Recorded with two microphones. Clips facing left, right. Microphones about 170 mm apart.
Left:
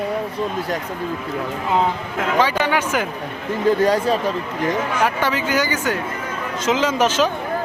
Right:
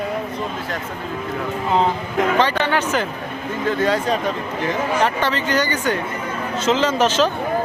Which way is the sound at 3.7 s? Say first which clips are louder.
Left 4 dB; 35° left (ahead or behind).